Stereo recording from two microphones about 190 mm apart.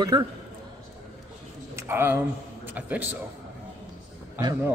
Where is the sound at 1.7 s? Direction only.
10° right (ahead or behind).